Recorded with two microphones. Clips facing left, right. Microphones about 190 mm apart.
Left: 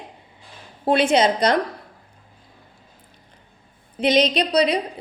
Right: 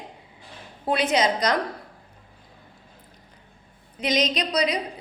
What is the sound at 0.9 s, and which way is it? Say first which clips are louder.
Speech: left 5 dB; 30° left (ahead or behind).